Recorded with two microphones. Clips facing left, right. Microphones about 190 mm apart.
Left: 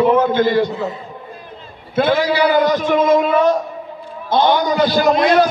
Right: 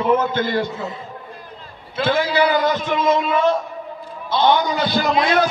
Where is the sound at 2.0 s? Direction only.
50° left (ahead or behind).